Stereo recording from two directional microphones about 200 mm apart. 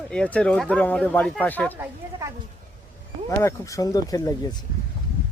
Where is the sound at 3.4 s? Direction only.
15° left (ahead or behind).